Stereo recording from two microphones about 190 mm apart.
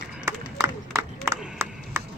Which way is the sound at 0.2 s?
15° right (ahead or behind).